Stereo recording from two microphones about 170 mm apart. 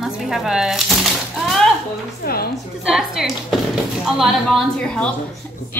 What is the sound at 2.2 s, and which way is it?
Speech, 65° left (ahead or behind).